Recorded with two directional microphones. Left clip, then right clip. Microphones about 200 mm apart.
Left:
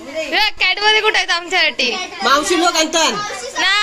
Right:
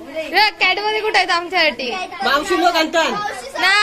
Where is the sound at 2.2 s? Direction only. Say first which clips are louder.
Left 2 dB; 40° left (ahead or behind).